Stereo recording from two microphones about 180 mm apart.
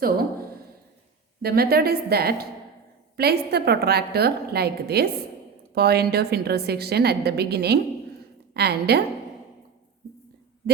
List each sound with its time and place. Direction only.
1.4 s a woman's voice: 60° right (ahead or behind)